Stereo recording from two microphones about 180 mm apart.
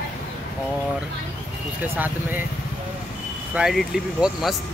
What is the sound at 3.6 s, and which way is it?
Speech, 5° right (ahead or behind).